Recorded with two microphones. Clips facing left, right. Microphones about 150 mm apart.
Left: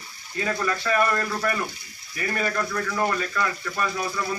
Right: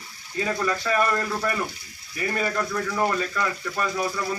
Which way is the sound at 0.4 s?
15° right (ahead or behind).